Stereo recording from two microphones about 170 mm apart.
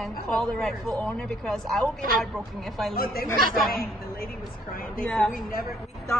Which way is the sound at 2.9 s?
60° left (ahead or behind).